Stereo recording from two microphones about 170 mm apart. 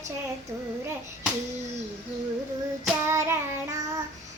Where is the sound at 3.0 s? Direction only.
15° right (ahead or behind).